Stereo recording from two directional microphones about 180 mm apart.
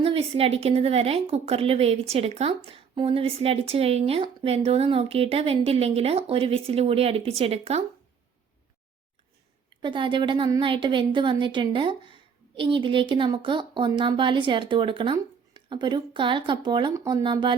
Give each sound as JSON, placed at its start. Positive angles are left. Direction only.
{"t": 0.0, "sound": "a woman's voice", "side_deg": -30}
{"t": 9.8, "sound": "a woman's voice", "side_deg": -25}